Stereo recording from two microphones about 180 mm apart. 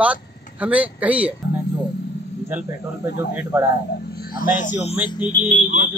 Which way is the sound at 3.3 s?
10° right (ahead or behind).